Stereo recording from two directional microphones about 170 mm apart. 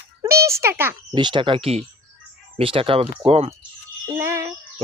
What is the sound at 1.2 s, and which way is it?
Speech, 25° right (ahead or behind).